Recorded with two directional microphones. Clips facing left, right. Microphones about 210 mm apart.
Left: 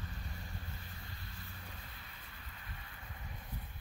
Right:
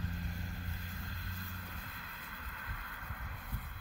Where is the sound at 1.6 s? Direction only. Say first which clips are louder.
Right 3 dB; 50° right (ahead or behind).